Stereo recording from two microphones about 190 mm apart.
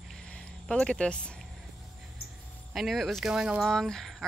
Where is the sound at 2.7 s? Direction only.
Centre (ahead or behind).